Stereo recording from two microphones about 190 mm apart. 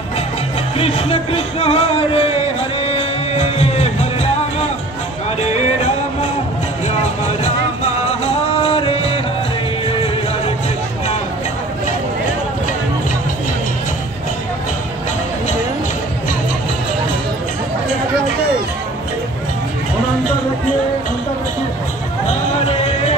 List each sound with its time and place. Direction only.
0.7 s music: 30° left (ahead or behind)
7.8 s music: 35° left (ahead or behind)
22.3 s music: 35° left (ahead or behind)